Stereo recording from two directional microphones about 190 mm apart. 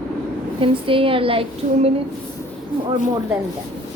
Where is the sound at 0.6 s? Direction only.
30° right (ahead or behind).